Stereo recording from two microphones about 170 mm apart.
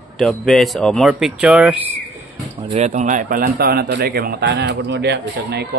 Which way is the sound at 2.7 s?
40° right (ahead or behind).